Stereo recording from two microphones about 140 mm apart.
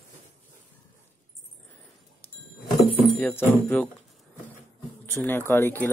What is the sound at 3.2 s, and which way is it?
Speech, 15° left (ahead or behind).